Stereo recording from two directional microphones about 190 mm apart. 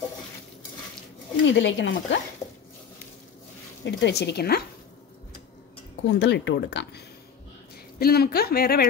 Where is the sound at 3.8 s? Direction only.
65° left (ahead or behind).